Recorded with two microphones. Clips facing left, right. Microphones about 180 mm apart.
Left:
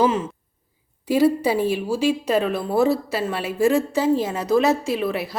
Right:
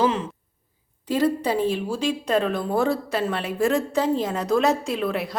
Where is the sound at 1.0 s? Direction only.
10° left (ahead or behind).